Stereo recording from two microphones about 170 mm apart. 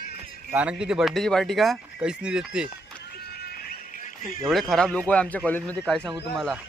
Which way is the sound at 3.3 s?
65° left (ahead or behind).